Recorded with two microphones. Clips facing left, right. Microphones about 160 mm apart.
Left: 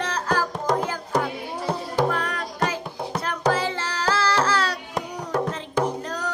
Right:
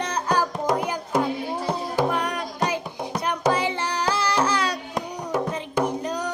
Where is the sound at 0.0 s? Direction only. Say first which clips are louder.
Right 1 dB; 15° right (ahead or behind).